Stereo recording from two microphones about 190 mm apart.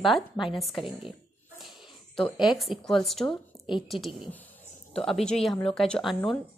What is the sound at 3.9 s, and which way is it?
A woman's voice, centre (ahead or behind).